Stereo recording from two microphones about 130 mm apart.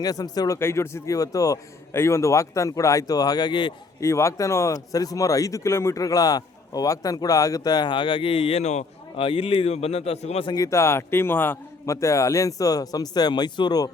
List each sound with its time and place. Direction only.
0.0 s speech: 30° left (ahead or behind)
4.0 s speech: 20° left (ahead or behind); by 8.8 s 55° left (ahead or behind)
9.1 s a man's voice: 45° left (ahead or behind)
10.5 s speech: 25° left (ahead or behind)